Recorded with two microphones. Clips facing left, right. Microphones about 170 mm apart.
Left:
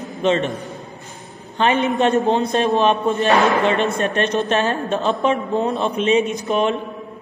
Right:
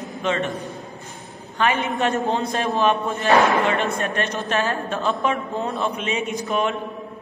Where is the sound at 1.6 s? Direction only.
25° left (ahead or behind).